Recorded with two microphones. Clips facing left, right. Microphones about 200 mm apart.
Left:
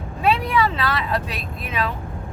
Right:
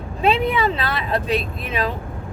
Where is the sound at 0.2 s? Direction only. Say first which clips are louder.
Right 1 dB; 25° right (ahead or behind).